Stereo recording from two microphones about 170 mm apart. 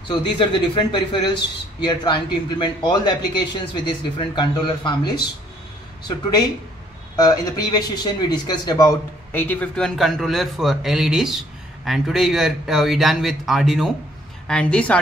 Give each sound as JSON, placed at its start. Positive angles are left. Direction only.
{"t": 0.1, "sound": "a man's voice", "side_deg": 30}
{"t": 7.2, "sound": "a man's voice", "side_deg": 25}
{"t": 9.3, "sound": "a man's voice", "side_deg": 10}